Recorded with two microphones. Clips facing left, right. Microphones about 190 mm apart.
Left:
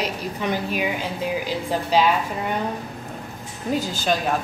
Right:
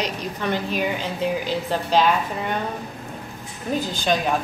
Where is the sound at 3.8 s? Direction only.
5° left (ahead or behind).